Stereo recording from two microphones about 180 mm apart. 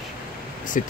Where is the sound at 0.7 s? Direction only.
45° left (ahead or behind).